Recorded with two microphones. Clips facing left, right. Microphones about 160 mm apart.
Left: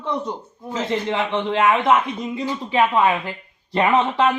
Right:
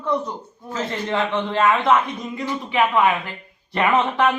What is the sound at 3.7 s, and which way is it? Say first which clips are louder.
Speech: left 1 dB; 25° left (ahead or behind).